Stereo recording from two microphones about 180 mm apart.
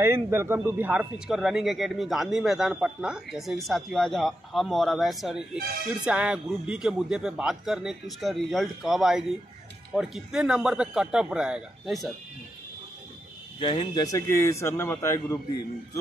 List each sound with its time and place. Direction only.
0.0 s speech: 15° right (ahead or behind)
13.6 s speech: 25° left (ahead or behind)